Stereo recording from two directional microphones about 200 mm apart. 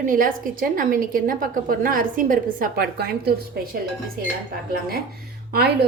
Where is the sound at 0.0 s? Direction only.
40° right (ahead or behind).